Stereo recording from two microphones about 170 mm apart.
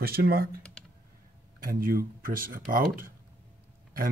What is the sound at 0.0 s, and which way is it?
Speech, 65° right (ahead or behind).